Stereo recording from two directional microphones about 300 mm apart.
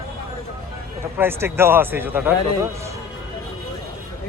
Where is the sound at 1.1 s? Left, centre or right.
Centre.